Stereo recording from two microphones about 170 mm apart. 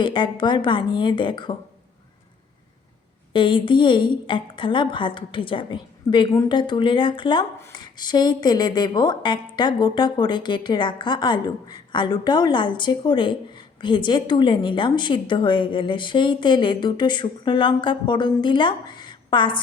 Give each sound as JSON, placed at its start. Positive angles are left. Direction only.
{"t": 0.0, "sound": "a woman's voice", "side_deg": 25}
{"t": 3.3, "sound": "a woman's voice", "side_deg": 30}